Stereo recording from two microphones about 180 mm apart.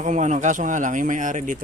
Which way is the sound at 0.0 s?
40° right (ahead or behind).